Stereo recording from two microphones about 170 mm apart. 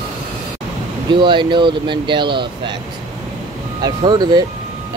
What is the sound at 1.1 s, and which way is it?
Speech, 25° right (ahead or behind).